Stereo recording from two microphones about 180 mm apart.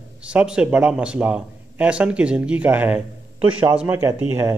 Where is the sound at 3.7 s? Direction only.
10° right (ahead or behind).